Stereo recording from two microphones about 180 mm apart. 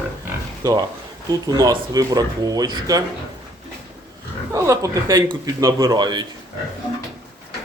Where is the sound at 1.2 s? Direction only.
20° right (ahead or behind).